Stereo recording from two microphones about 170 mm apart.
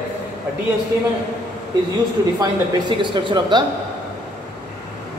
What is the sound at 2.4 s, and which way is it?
Speech, 30° right (ahead or behind).